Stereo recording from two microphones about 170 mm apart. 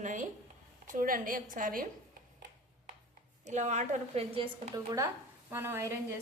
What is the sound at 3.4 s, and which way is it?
A woman's voice, 45° right (ahead or behind).